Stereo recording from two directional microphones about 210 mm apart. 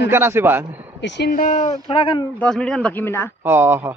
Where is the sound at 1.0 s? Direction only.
55° left (ahead or behind).